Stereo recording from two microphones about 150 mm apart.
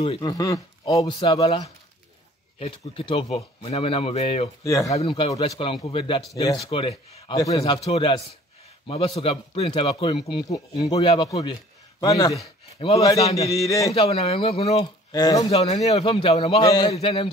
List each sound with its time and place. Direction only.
0.0 s speech: 30° left (ahead or behind)
1.2 s a man's voice: 35° left (ahead or behind)
2.6 s speech: 40° left (ahead or behind)
4.6 s speech: 20° left (ahead or behind)
4.9 s a man's voice: 40° left (ahead or behind)
7.3 s a man's voice: 25° left (ahead or behind)
11.2 s speech: 25° left (ahead or behind)
12.7 s a man's voice: 40° left (ahead or behind)
13.4 s speech: 20° left (ahead or behind)
13.9 s speech: 40° left (ahead or behind)
15.0 s speech: 25° left (ahead or behind)
15.5 s speech: 45° left (ahead or behind)
16.6 s speech: 25° left (ahead or behind)
16.9 s a man's voice: 40° left (ahead or behind)